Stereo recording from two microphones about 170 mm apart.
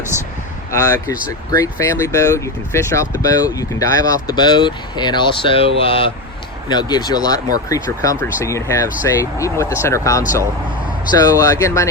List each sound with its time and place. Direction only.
0.7 s speech: 20° left (ahead or behind)